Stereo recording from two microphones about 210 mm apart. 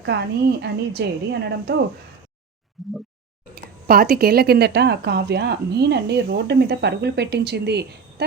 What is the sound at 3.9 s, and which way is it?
Speech, 45° right (ahead or behind).